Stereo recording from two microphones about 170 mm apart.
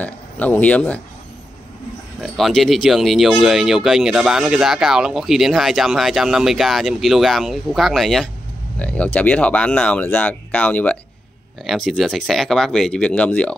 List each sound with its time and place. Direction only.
0.0 s speech: 10° left (ahead or behind)
2.1 s speech: centre (ahead or behind)